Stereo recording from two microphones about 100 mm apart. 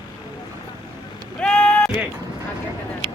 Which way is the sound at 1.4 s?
10° left (ahead or behind).